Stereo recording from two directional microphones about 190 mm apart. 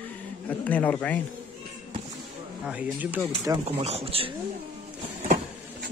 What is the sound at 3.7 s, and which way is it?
Speech, 35° right (ahead or behind).